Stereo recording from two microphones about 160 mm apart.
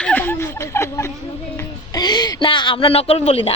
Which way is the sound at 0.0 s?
10° left (ahead or behind).